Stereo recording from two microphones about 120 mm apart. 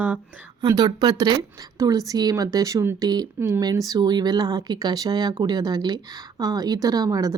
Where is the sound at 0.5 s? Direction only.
35° right (ahead or behind).